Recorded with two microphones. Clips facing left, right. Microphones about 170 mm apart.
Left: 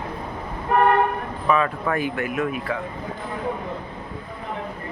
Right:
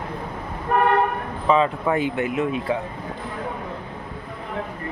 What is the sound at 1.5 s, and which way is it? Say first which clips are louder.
Speech: right 2 dB; 20° right (ahead or behind).